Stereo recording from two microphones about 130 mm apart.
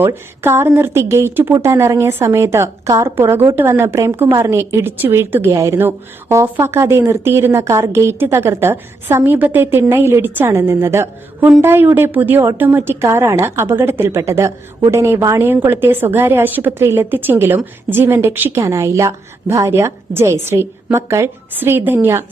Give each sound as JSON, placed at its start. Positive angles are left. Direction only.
{"t": 0.0, "sound": "speech", "side_deg": -20}